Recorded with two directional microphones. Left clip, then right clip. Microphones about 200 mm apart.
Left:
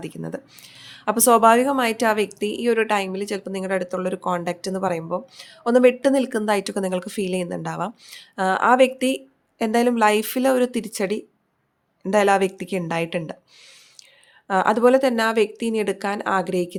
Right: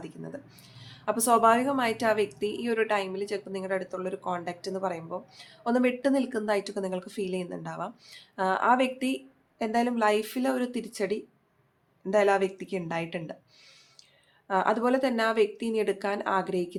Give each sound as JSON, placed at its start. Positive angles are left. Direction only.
{"t": 0.0, "sound": "speech", "side_deg": 40}